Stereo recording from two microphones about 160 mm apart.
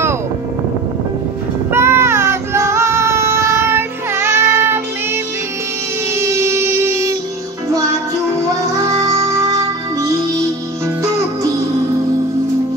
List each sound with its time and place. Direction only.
1.7 s child singing: 15° right (ahead or behind)
6.1 s music: 15° right (ahead or behind)
8.8 s music: 20° right (ahead or behind)